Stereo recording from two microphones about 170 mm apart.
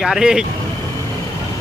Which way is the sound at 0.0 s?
5° right (ahead or behind).